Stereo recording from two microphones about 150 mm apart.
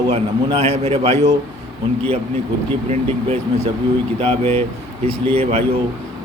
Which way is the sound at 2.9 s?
45° right (ahead or behind).